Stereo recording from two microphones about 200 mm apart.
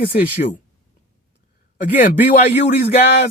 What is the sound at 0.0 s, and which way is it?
Speech, 50° left (ahead or behind).